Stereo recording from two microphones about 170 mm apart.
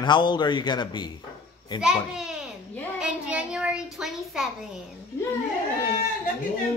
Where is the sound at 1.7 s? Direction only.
5° right (ahead or behind).